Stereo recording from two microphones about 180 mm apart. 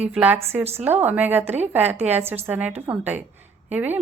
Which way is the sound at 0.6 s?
35° right (ahead or behind).